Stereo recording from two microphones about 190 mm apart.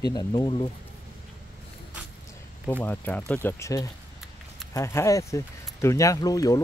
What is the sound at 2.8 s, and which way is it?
Speech, 10° left (ahead or behind).